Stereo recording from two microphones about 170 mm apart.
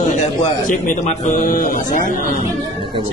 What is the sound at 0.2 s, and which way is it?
A man's voice, 45° left (ahead or behind).